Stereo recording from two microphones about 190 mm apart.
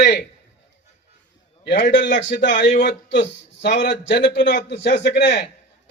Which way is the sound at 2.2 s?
70° left (ahead or behind).